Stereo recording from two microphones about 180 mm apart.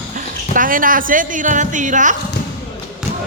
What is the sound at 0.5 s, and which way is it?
A woman's voice, 50° right (ahead or behind).